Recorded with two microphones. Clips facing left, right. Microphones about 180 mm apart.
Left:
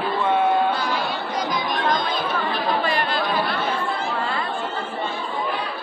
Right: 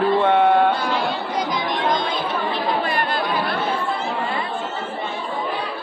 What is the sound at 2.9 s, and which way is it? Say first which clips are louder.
Chatter: right 1 dB; 55° right (ahead or behind).